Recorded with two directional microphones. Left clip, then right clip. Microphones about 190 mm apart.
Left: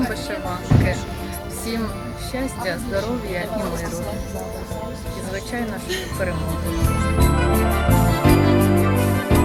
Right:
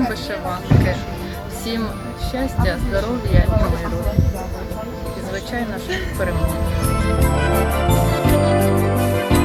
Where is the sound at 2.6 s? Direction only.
10° left (ahead or behind).